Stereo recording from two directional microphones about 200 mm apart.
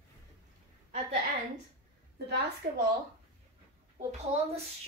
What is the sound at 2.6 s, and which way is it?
Speech, 45° right (ahead or behind).